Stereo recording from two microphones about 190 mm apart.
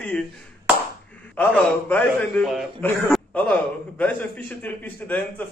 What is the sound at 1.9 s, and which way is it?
A man's voice, 5° left (ahead or behind).